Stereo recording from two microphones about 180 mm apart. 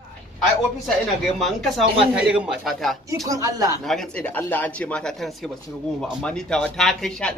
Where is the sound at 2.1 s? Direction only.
5° right (ahead or behind).